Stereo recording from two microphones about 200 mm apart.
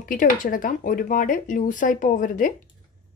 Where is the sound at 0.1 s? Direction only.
45° left (ahead or behind).